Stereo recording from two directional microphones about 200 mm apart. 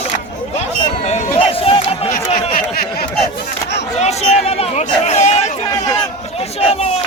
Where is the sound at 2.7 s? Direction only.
50° left (ahead or behind).